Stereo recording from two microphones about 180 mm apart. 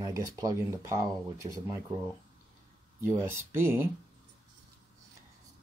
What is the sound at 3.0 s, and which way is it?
Speech, 15° right (ahead or behind).